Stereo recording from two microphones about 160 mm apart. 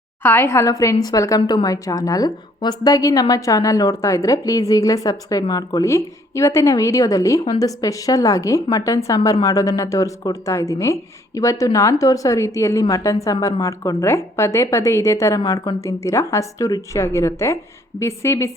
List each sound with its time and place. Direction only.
0.2 s a woman's voice: 15° left (ahead or behind)